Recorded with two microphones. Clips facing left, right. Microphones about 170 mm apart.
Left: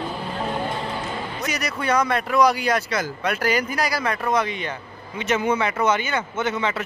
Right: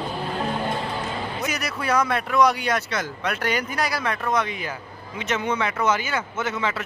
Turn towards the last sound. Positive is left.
turn(degrees=0)  # may be behind; listen again after turning